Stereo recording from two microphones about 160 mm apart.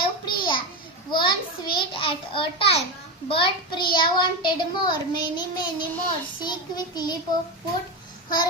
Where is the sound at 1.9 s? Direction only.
30° left (ahead or behind).